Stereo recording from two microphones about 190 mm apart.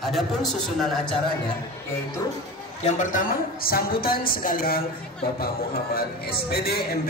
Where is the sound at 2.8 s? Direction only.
40° left (ahead or behind); by 7.0 s 55° left (ahead or behind).